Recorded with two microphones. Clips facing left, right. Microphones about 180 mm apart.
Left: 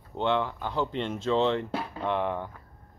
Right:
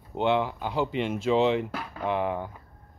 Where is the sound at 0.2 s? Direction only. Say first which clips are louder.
Right 2 dB; 10° right (ahead or behind).